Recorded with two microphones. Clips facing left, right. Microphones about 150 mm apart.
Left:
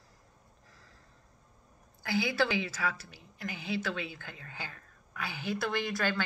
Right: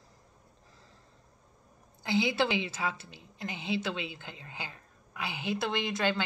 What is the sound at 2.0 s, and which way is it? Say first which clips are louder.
A woman's voice: right 2 dB; 20° right (ahead or behind).